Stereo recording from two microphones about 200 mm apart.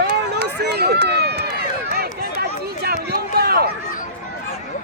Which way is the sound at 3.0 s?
55° right (ahead or behind).